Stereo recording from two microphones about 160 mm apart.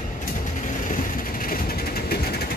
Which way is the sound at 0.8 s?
60° left (ahead or behind).